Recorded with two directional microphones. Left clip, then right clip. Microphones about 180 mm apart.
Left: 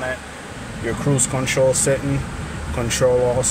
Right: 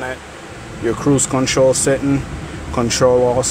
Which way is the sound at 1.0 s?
15° right (ahead or behind).